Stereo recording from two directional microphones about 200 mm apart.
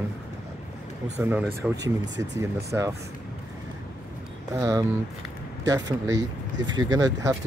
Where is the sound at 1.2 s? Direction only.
10° right (ahead or behind).